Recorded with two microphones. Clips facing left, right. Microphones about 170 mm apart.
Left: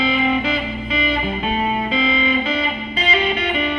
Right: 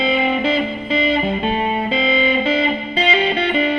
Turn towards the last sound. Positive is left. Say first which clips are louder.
# right 3 dB
turn(degrees=-30)  # may be behind; listen again after turning